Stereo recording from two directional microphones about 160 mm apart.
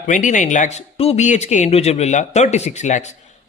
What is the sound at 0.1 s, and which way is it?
A man's voice, 50° left (ahead or behind).